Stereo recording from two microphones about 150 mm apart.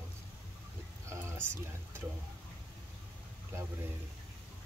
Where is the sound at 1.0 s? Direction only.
20° right (ahead or behind).